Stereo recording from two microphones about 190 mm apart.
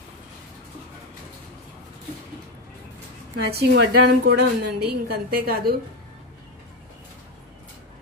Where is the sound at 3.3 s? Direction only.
65° right (ahead or behind).